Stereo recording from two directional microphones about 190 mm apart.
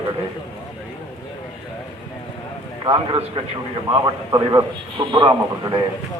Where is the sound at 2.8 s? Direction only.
25° right (ahead or behind).